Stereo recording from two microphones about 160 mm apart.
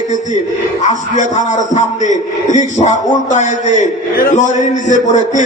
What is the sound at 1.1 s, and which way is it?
A man's voice, 50° left (ahead or behind).